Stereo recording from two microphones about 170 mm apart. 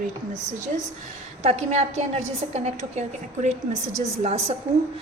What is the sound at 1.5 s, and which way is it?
A woman's voice, 40° right (ahead or behind).